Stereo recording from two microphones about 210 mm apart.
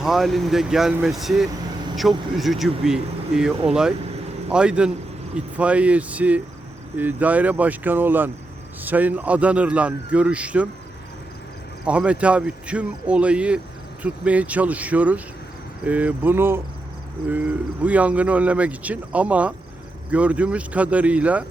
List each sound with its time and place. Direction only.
0.0 s a man's voice: centre (ahead or behind)
11.9 s a man's voice: 5° right (ahead or behind)